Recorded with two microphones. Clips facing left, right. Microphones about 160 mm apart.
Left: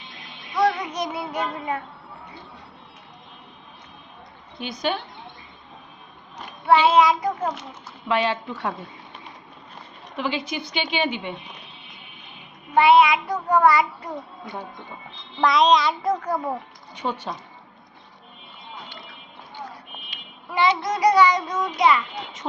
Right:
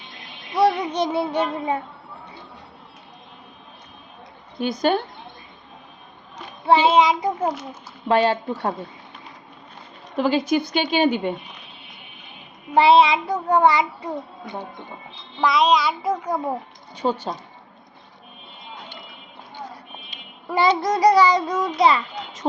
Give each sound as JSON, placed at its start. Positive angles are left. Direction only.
{"t": 0.5, "sound": "child singing", "side_deg": -30}
{"t": 4.5, "sound": "a woman's voice", "side_deg": -45}
{"t": 6.7, "sound": "a child's voice", "side_deg": -20}
{"t": 8.0, "sound": "a child's voice", "side_deg": -40}
{"t": 10.2, "sound": "a woman's voice", "side_deg": -40}
{"t": 12.7, "sound": "a child's voice", "side_deg": -30}
{"t": 15.4, "sound": "child singing", "side_deg": 0}
{"t": 16.2, "sound": "speech", "side_deg": -15}
{"t": 16.9, "sound": "a child's voice", "side_deg": -35}
{"t": 20.5, "sound": "a child's voice", "side_deg": -40}